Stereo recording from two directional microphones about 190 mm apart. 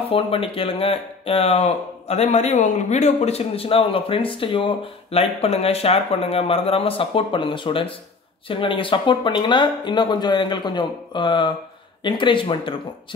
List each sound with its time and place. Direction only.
0.1 s speech: 30° left (ahead or behind)